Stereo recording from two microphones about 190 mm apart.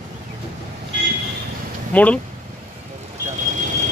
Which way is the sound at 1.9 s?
5° left (ahead or behind).